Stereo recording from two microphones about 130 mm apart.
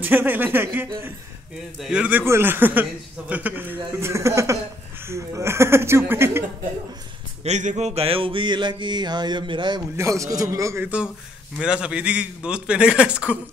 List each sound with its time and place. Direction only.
0.0 s a man's voice: 15° right (ahead or behind)
7.4 s music: 60° right (ahead or behind); by 9.8 s 35° right (ahead or behind)
9.9 s speech: 25° right (ahead or behind)
11.5 s a man's voice: 5° right (ahead or behind)